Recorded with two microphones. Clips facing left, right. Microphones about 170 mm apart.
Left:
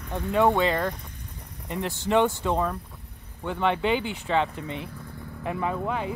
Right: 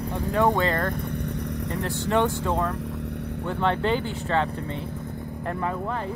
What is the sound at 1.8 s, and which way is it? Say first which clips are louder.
Speech: left 2 dB; 20° left (ahead or behind).